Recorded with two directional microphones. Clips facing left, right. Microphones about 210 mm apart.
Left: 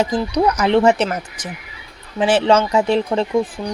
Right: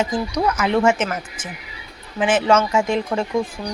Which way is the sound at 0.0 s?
35° left (ahead or behind).